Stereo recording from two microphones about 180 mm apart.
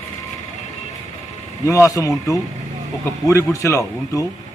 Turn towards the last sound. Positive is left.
turn(degrees=15)  # may be behind; listen again after turning